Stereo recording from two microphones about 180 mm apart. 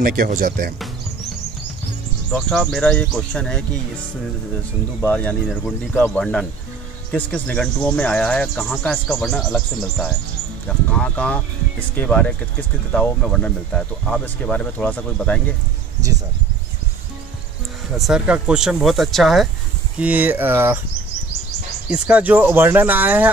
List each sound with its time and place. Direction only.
0.0 s speech: 50° right (ahead or behind)
2.3 s speech: centre (ahead or behind)
5.0 s speech: 10° left (ahead or behind)
16.0 s speech: 20° right (ahead or behind)
17.9 s speech: centre (ahead or behind)
21.8 s speech: 5° right (ahead or behind)